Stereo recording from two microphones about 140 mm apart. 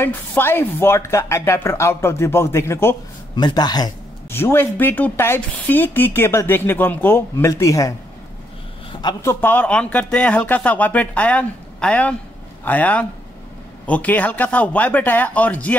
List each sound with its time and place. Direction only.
0.0 s speech: 15° left (ahead or behind)
3.3 s speech: 30° left (ahead or behind)
4.3 s speech: 15° left (ahead or behind)
9.2 s speech: 15° left (ahead or behind)